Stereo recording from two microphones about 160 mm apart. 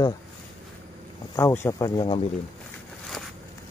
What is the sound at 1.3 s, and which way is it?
Speech, 15° left (ahead or behind).